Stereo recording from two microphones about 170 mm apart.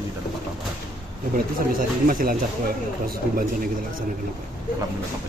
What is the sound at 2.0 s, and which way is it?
Speech, 55° right (ahead or behind).